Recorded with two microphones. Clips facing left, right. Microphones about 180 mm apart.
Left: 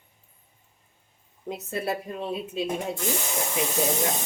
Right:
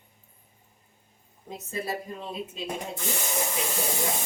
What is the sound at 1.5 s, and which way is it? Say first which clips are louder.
Speech: left 4 dB; 65° left (ahead or behind).